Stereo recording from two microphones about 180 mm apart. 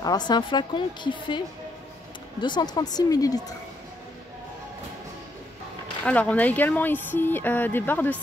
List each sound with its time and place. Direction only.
0.0 s speech: 20° left (ahead or behind)
2.4 s speech: 25° left (ahead or behind)
6.0 s speech: 10° left (ahead or behind)